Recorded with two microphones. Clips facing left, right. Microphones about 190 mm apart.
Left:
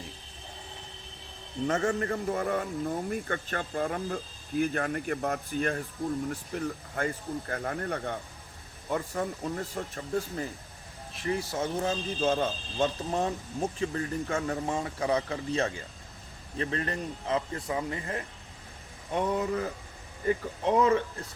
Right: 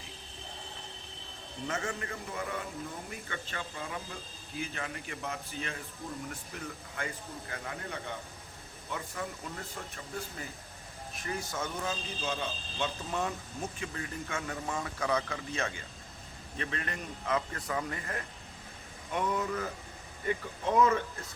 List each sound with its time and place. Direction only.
1.6 s speech: 45° left (ahead or behind)
6.2 s speech: 40° left (ahead or behind)
8.9 s speech: 40° left (ahead or behind)
11.1 s speech: 30° left (ahead or behind)
12.2 s speech: 50° left (ahead or behind)
13.1 s speech: 35° left (ahead or behind)